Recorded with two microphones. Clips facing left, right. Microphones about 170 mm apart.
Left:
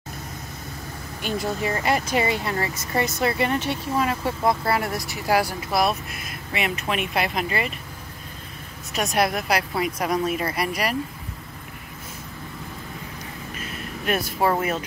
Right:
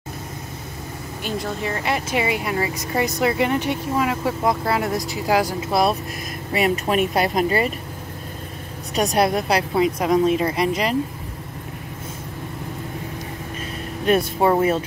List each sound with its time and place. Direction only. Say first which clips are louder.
1.2 s speech: left 1 dB; centre (ahead or behind); by 5.8 s 15° right (ahead or behind)
6.5 s speech: right 7 dB; 40° right (ahead or behind)
8.9 s speech: right 4 dB; 35° right (ahead or behind)
14.0 s speech: right 5 dB; 30° right (ahead or behind)